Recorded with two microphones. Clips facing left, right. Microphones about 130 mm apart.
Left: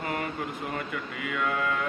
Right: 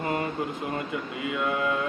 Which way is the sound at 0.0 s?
25° right (ahead or behind).